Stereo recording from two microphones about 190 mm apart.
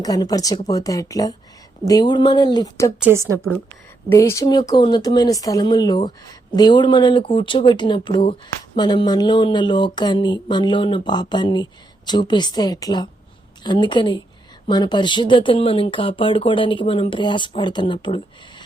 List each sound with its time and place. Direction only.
0.0 s speech: 20° left (ahead or behind)
3.0 s a woman's voice: 15° right (ahead or behind)
4.1 s speech: 15° left (ahead or behind)